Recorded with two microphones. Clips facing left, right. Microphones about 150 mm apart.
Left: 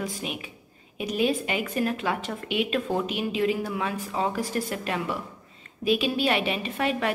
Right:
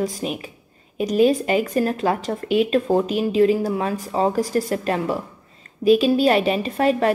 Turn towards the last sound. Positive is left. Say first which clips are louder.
# right 8 dB
turn(degrees=-40)  # may be behind; listen again after turning